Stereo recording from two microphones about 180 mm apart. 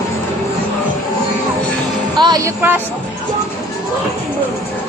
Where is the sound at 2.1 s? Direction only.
25° right (ahead or behind).